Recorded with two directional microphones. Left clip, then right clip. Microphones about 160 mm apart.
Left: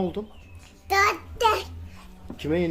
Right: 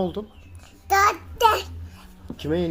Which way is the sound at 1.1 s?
5° left (ahead or behind).